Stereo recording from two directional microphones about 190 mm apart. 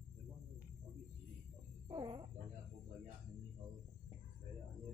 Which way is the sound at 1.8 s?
20° right (ahead or behind).